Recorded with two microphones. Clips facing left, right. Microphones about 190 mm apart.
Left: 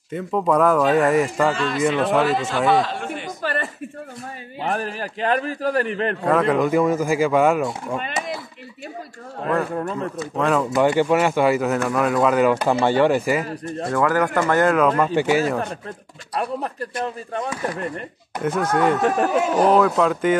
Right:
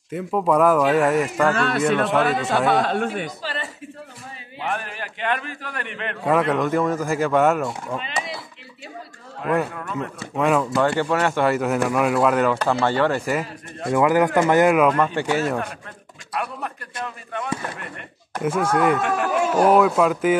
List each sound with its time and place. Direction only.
0.1 s speech: 5° right (ahead or behind)
1.6 s speech: 65° right (ahead or behind)
4.6 s speech: 35° left (ahead or behind)
6.2 s speech: centre (ahead or behind)
9.8 s speech: 35° left (ahead or behind)
10.3 s speech: 5° right (ahead or behind)
10.7 s speech: 15° left (ahead or behind)
12.4 s speech: 10° left (ahead or behind)
13.9 s speech: 15° right (ahead or behind)
15.1 s speech: 10° left (ahead or behind)
16.3 s speech: 35° left (ahead or behind)
18.4 s speech: 5° right (ahead or behind)
19.0 s speech: 40° left (ahead or behind)
19.5 s speech: centre (ahead or behind)